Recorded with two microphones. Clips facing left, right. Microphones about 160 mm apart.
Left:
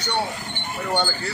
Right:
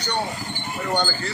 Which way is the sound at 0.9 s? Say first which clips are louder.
Even; 5° left (ahead or behind).